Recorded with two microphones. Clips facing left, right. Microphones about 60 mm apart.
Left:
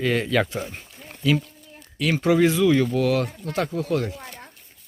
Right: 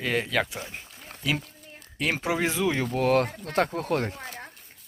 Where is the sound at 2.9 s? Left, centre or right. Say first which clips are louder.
Left 1 dB; right.